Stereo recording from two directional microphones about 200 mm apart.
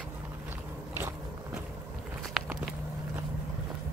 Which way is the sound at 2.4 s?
Centre (ahead or behind).